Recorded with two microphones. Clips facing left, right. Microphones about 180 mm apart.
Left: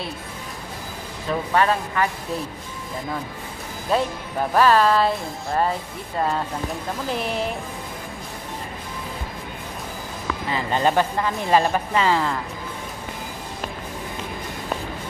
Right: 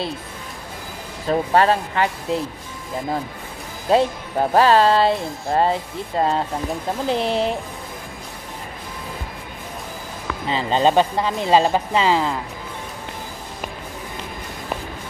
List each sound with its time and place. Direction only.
1.3 s speech: 35° right (ahead or behind)
3.9 s speech: 30° right (ahead or behind)
10.5 s speech: 25° right (ahead or behind)